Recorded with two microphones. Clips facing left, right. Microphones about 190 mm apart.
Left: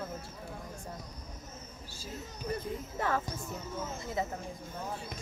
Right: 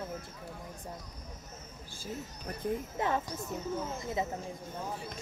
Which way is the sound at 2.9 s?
20° right (ahead or behind).